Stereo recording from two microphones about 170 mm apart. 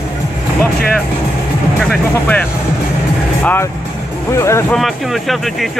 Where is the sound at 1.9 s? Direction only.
10° left (ahead or behind).